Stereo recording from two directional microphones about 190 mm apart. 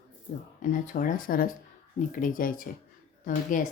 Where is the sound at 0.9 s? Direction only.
45° left (ahead or behind).